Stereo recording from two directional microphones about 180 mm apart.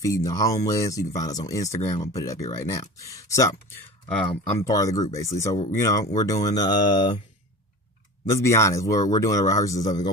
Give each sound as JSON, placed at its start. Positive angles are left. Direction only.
{"t": 0.0, "sound": "speech", "side_deg": 20}
{"t": 2.0, "sound": "mantra", "side_deg": 20}
{"t": 2.5, "sound": "speech", "side_deg": 15}
{"t": 4.6, "sound": "mantra", "side_deg": 20}
{"t": 5.1, "sound": "speech", "side_deg": 15}
{"t": 6.4, "sound": "mantra", "side_deg": 20}
{"t": 8.3, "sound": "speech", "side_deg": 15}